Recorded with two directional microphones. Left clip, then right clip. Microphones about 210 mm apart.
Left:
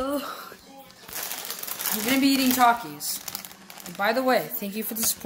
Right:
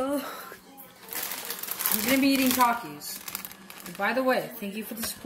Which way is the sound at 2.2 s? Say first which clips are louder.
Left 2 dB; 30° left (ahead or behind).